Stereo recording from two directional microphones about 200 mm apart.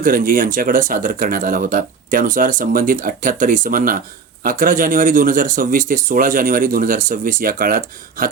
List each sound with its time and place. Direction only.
0.0 s speech: 45° right (ahead or behind)